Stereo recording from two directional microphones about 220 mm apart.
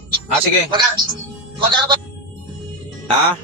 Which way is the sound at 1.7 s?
20° right (ahead or behind).